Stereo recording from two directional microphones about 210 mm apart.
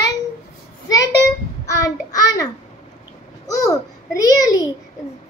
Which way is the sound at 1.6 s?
15° left (ahead or behind).